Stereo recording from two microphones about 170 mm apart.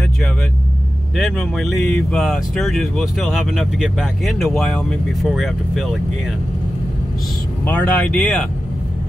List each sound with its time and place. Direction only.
1.1 s speech: centre (ahead or behind)
7.6 s speech: 10° left (ahead or behind)